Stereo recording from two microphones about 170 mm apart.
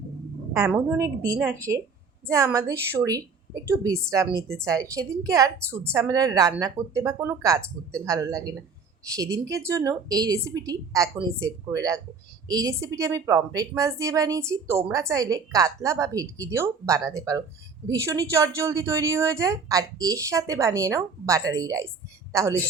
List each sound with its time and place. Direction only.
0.7 s a woman's voice: 15° right (ahead or behind)